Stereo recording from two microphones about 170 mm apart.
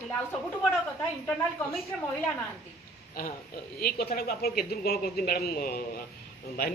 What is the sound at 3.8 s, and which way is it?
Speech, 65° left (ahead or behind).